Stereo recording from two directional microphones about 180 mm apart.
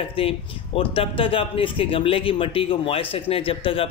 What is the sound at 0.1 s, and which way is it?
Speech, 30° left (ahead or behind).